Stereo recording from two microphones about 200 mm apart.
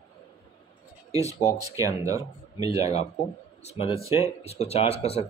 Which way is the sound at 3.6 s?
30° left (ahead or behind).